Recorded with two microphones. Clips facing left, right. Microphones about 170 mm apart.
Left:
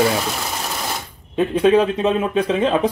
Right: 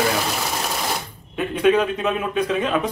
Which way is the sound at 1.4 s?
30° left (ahead or behind).